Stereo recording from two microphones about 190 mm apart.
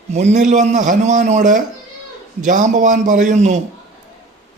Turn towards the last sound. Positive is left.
turn(degrees=-40)  # may be behind; listen again after turning